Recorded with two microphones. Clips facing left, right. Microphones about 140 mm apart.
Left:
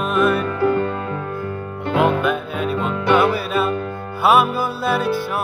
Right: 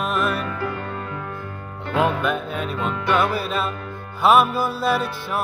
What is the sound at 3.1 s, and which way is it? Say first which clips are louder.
Music: left 5 dB; centre (ahead or behind).